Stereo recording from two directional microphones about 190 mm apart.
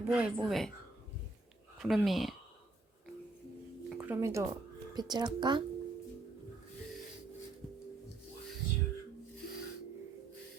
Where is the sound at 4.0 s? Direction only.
10° right (ahead or behind).